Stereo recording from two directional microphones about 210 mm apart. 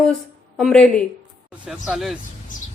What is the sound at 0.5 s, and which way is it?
A woman's voice, 5° left (ahead or behind).